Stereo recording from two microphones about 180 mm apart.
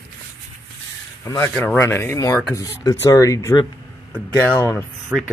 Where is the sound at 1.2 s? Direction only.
15° left (ahead or behind).